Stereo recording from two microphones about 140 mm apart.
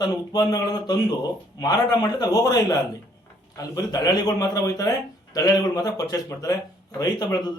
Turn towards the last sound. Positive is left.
turn(degrees=30)  # may be behind; listen again after turning